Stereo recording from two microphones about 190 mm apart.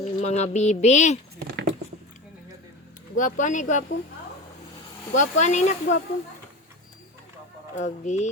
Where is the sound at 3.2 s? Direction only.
40° left (ahead or behind).